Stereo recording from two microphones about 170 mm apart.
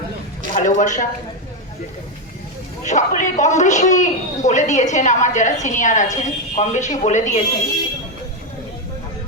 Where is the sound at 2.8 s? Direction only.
45° left (ahead or behind).